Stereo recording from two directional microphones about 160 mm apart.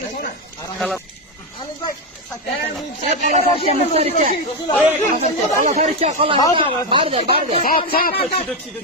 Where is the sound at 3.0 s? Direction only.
50° right (ahead or behind).